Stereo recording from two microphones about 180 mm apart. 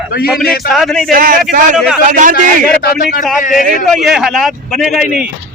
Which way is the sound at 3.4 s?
50° left (ahead or behind).